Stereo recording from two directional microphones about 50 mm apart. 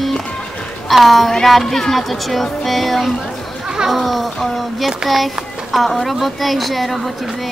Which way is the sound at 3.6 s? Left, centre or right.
Centre.